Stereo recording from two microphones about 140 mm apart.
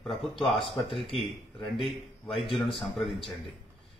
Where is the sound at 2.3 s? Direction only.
40° left (ahead or behind).